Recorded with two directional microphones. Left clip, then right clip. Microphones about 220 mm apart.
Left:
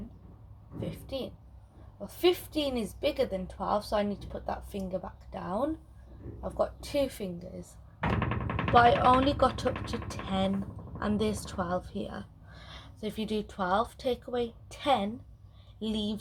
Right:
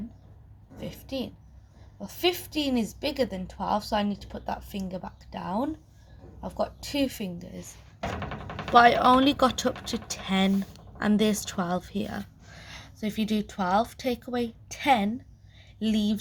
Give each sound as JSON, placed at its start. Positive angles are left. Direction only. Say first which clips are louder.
{"t": 0.9, "sound": "a sound", "louder": "right 3 dB", "side_deg": -25}
{"t": 2.0, "sound": "a woman's voice", "louder": "even", "side_deg": -25}
{"t": 8.7, "sound": "a woman's voice", "louder": "right 4 dB", "side_deg": -35}